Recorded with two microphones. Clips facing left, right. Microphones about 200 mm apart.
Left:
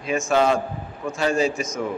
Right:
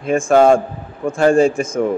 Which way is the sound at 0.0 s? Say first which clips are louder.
Right 8 dB; 50° right (ahead or behind).